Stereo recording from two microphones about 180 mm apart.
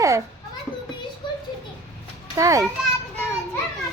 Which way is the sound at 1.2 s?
25° left (ahead or behind).